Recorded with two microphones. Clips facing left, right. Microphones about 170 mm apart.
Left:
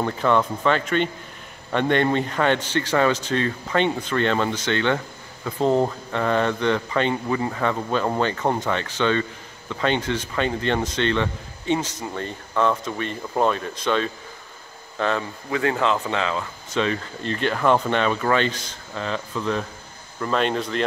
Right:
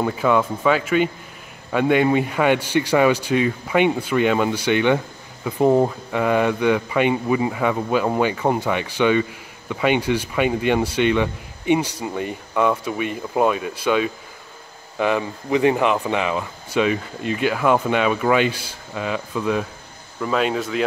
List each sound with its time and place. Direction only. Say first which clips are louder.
0.0 s a man's voice: right 2 dB; 5° right (ahead or behind)